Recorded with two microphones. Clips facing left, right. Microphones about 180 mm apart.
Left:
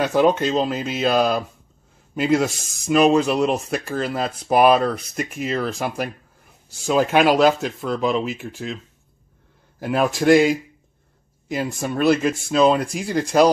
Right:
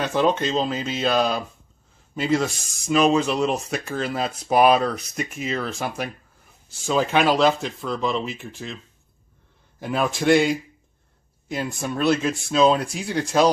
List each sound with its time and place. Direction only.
0.0 s speech: 5° left (ahead or behind)
9.8 s speech: 5° left (ahead or behind)